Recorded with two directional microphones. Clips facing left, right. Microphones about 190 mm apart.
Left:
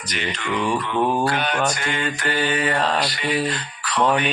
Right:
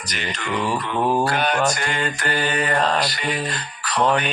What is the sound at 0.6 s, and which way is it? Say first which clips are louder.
Mantra: left 1 dB; centre (ahead or behind).